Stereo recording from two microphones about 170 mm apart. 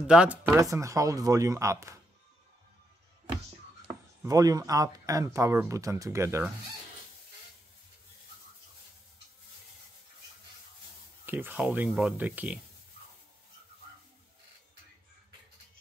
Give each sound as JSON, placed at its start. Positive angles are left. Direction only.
{"t": 0.0, "sound": "speech", "side_deg": -5}
{"t": 4.2, "sound": "speech", "side_deg": -20}
{"t": 11.2, "sound": "speech", "side_deg": -10}